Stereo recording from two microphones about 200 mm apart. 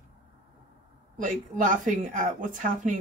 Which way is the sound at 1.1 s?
40° right (ahead or behind).